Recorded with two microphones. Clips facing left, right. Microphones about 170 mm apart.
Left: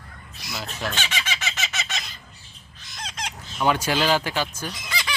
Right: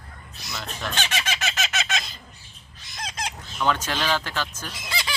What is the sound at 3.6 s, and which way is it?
Speech, 10° left (ahead or behind).